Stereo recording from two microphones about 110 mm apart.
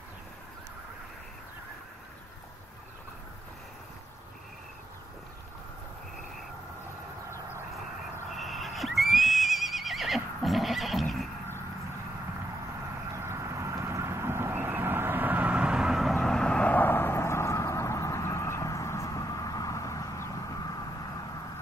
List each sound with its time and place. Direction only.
7.2 s vehicle: 25° right (ahead or behind)
8.3 s neigh: centre (ahead or behind)
13.1 s vehicle: 25° right (ahead or behind); by 20.2 s 30° left (ahead or behind)